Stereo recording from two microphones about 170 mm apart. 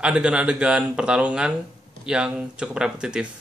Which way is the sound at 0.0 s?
5° right (ahead or behind).